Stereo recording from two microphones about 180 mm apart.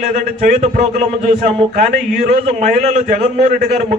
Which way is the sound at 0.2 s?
45° right (ahead or behind).